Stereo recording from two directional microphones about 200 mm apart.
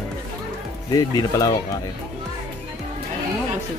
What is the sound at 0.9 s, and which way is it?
Speech, 20° left (ahead or behind).